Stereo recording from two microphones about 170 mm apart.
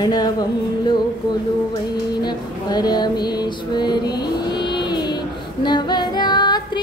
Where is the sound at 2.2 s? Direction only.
25° left (ahead or behind).